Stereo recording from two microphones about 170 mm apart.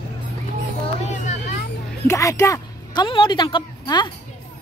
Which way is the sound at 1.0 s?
45° left (ahead or behind).